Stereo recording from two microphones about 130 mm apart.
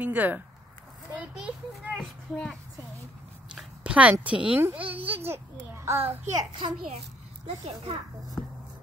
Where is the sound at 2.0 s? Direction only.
5° left (ahead or behind).